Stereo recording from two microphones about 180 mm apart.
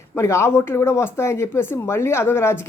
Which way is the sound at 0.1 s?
15° left (ahead or behind).